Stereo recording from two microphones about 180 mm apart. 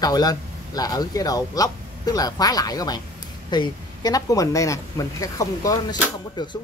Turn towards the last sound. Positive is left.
turn(degrees=25)  # may be behind; listen again after turning